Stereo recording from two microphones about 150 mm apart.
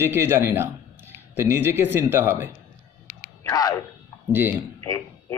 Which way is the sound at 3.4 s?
25° left (ahead or behind).